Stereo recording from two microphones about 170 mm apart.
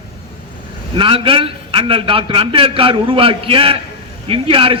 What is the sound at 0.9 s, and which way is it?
A man's voice, 30° right (ahead or behind).